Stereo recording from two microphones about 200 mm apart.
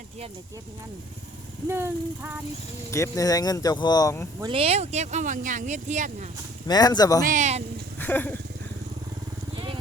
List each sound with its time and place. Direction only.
1.6 s a sound: 10° right (ahead or behind)
2.9 s speech: 15° left (ahead or behind)
4.4 s speech: 25° right (ahead or behind)
6.7 s speech: 20° left (ahead or behind)
7.3 s speech: 35° right (ahead or behind)
7.9 s a sound: 10° left (ahead or behind)